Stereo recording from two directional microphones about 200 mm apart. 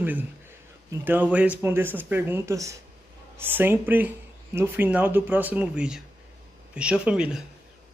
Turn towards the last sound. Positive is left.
turn(degrees=-5)  # may be behind; listen again after turning